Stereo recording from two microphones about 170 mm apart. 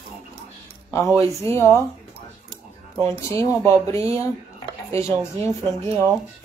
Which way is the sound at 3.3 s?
15° left (ahead or behind).